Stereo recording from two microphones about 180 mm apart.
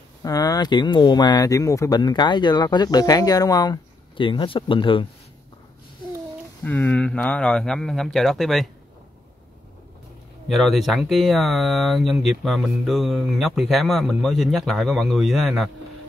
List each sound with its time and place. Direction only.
0.2 s speech: 20° left (ahead or behind)
6.6 s speech: 10° left (ahead or behind)
10.5 s speech: centre (ahead or behind)